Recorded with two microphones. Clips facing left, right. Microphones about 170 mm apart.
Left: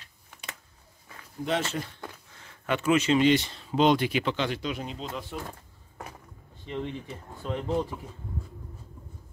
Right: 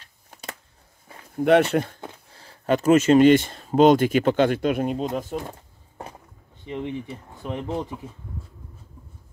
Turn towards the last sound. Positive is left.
turn(degrees=-20)  # may be behind; listen again after turning